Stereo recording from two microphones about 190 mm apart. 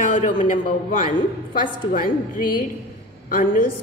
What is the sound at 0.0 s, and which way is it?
A woman's voice, 40° left (ahead or behind).